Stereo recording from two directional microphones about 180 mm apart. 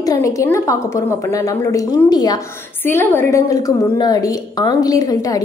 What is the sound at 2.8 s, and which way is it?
A woman's voice, 10° left (ahead or behind).